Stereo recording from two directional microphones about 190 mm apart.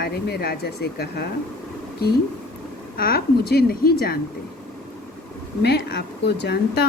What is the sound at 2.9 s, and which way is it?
A woman's voice, 50° left (ahead or behind).